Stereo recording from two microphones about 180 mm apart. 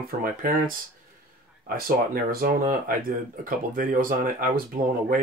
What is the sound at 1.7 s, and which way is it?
Speech, 55° right (ahead or behind).